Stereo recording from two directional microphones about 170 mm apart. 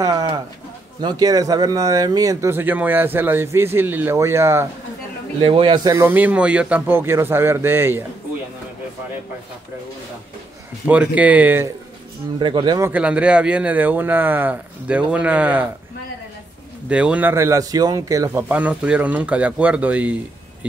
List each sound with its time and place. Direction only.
0.0 s a sound: 20° right (ahead or behind)
1.0 s speech: 20° right (ahead or behind)
5.4 s speech: 30° right (ahead or behind)
6.0 s speech: 10° right (ahead or behind)
10.9 s speech: 10° right (ahead or behind)
12.4 s speech: 25° right (ahead or behind)
12.9 s speech: 5° right (ahead or behind)
16.9 s speech: 5° right (ahead or behind)